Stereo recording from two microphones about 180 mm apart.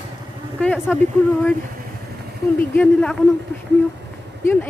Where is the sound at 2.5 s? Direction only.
10° left (ahead or behind).